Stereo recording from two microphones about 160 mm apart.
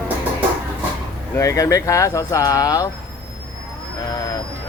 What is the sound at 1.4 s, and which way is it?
Speech, 20° left (ahead or behind).